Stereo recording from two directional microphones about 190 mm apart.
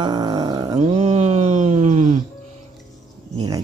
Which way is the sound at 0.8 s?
35° right (ahead or behind).